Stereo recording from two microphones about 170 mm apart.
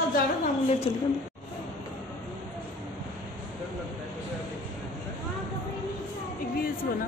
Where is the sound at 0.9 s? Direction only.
35° left (ahead or behind).